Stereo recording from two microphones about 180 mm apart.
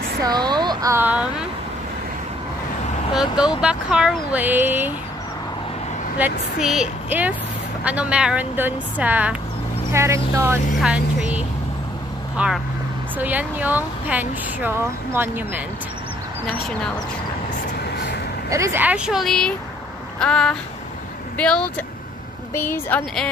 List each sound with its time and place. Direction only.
0.2 s speech: 25° right (ahead or behind)
3.2 s speech: 5° right (ahead or behind)
6.1 s speech: 5° right (ahead or behind)
18.5 s a woman's voice: 15° right (ahead or behind); by 23.2 s 10° left (ahead or behind)